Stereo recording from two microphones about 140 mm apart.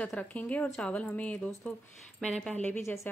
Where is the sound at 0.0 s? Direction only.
10° left (ahead or behind).